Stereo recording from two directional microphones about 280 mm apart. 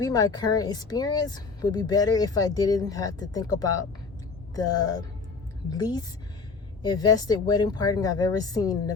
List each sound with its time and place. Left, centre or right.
0.0 s speech: centre